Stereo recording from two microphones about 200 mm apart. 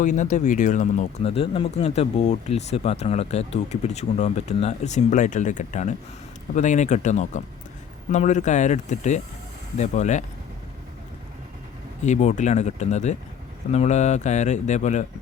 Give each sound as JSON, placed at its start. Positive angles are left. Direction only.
{"t": 0.0, "sound": "speech", "side_deg": 40}
{"t": 12.0, "sound": "speech", "side_deg": 35}